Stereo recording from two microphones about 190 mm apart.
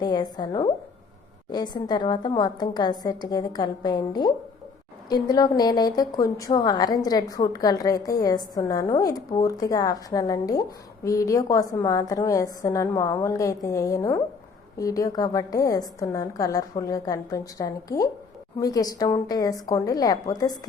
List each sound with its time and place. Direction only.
0.0 s a woman's voice: 25° left (ahead or behind)